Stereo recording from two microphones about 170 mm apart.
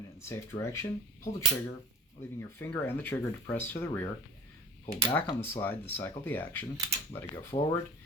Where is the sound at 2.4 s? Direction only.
15° left (ahead or behind).